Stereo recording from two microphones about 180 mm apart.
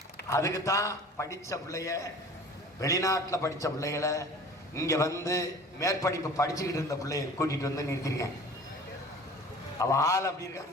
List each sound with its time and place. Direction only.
0.3 s a man's voice: 15° left (ahead or behind)
9.7 s a man's voice: 15° left (ahead or behind)